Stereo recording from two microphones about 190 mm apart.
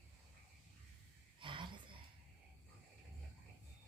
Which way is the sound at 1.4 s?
25° right (ahead or behind).